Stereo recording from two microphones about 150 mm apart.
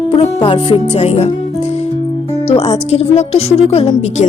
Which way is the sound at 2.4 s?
45° left (ahead or behind).